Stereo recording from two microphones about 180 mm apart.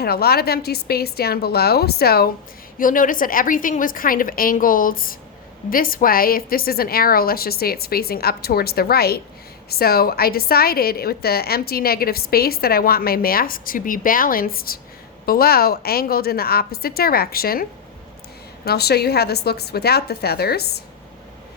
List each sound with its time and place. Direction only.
0.0 s a woman's voice: 60° left (ahead or behind)
2.7 s a woman's voice: 50° left (ahead or behind)